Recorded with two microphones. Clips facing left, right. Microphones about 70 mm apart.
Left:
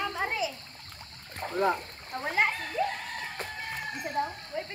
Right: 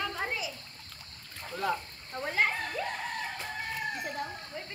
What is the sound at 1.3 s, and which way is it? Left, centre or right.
Speech, left.